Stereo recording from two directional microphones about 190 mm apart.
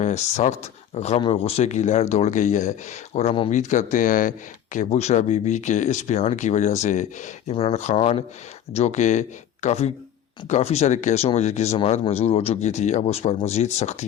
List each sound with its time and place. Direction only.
0.0 s speech: 35° left (ahead or behind)